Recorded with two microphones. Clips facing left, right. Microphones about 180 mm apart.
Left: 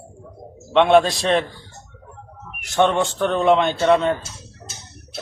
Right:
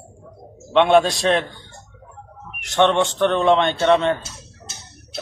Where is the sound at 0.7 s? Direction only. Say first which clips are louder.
Even; centre (ahead or behind).